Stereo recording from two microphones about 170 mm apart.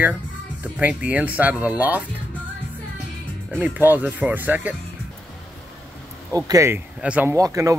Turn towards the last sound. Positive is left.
turn(degrees=-20)  # may be behind; listen again after turning